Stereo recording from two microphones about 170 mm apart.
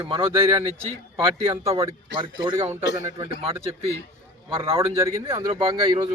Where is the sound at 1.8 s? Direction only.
20° right (ahead or behind).